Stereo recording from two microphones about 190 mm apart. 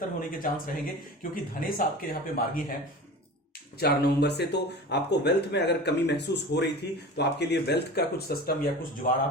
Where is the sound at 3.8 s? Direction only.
60° left (ahead or behind).